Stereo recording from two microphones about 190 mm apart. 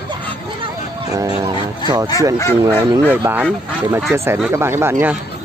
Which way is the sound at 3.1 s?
10° right (ahead or behind).